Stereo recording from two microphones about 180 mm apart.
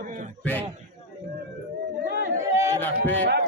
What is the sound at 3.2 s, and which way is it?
Speech, 60° right (ahead or behind).